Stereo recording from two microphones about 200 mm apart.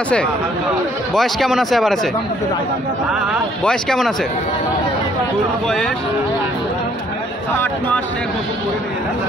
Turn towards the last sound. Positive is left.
turn(degrees=10)  # may be behind; listen again after turning